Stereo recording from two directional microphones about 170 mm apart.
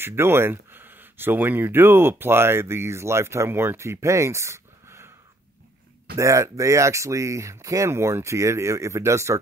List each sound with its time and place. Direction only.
0.0 s speech: 15° right (ahead or behind)
6.1 s speech: 20° right (ahead or behind)